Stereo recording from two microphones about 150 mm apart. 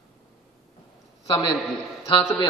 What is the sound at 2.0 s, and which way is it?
Speech, 30° left (ahead or behind).